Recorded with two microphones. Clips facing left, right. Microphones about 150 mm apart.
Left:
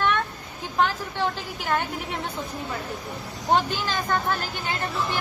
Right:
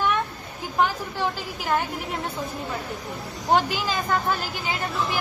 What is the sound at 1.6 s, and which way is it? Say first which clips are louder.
Speech: right 1 dB; centre (ahead or behind).